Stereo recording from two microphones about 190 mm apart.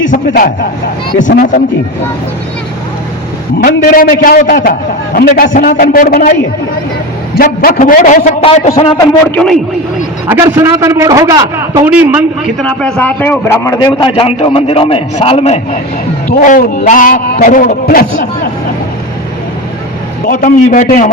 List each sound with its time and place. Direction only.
0.1 s a man's voice: 50° left (ahead or behind)
3.6 s a man's voice: 50° left (ahead or behind)
7.3 s a man's voice: 50° left (ahead or behind)
9.3 s a man's voice: 5° left (ahead or behind)
10.2 s a man's voice: 15° right (ahead or behind)
11.9 s a man's voice: 5° right (ahead or behind)
12.6 s a man's voice: 5° left (ahead or behind); by 15.8 s 35° left (ahead or behind)
16.3 s a man's voice: 45° left (ahead or behind)
20.2 s a man's voice: 50° left (ahead or behind)